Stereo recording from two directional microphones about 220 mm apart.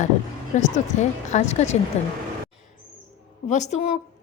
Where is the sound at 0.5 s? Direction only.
30° left (ahead or behind).